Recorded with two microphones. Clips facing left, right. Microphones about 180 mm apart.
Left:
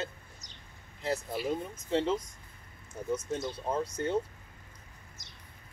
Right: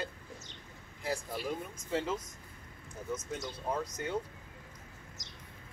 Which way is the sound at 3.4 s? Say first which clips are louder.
Left 3 dB; 25° left (ahead or behind).